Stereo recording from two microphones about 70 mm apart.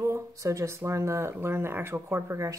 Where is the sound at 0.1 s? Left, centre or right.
Right.